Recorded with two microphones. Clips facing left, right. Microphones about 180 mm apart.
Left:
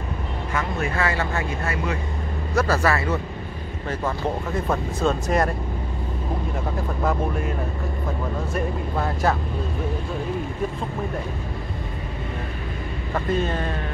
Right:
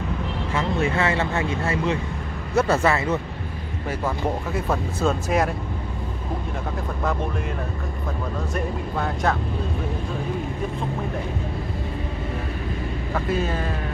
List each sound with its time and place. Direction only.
0.6 s speech: 25° right (ahead or behind)
4.6 s speech: 5° right (ahead or behind)
8.5 s speech: 5° left (ahead or behind)
13.1 s speech: 5° right (ahead or behind)